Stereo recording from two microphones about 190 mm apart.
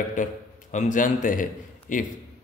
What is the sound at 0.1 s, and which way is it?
A man's voice, 40° left (ahead or behind).